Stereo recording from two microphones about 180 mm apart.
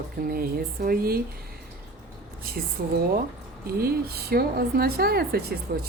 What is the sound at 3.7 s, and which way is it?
A woman's voice, 55° right (ahead or behind).